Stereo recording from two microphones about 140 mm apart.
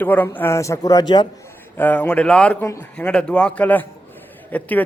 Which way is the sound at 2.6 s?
20° left (ahead or behind).